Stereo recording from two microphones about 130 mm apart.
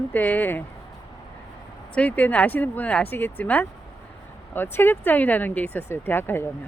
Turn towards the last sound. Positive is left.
turn(degrees=15)  # may be behind; listen again after turning